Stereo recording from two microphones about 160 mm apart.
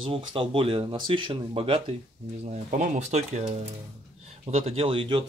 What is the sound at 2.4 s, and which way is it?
Speech, 50° right (ahead or behind).